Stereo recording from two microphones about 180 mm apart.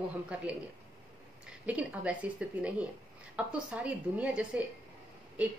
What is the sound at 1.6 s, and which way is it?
A woman's voice, 10° right (ahead or behind).